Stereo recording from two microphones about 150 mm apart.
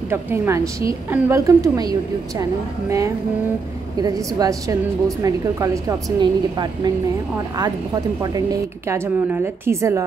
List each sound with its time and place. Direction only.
0.1 s a woman's voice: 15° right (ahead or behind)
4.0 s a woman's voice: 25° right (ahead or behind)